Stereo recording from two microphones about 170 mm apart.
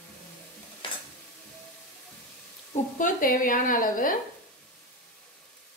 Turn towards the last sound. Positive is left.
turn(degrees=50)  # may be behind; listen again after turning